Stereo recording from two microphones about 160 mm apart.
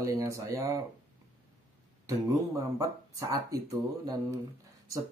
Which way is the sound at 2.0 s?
20° right (ahead or behind).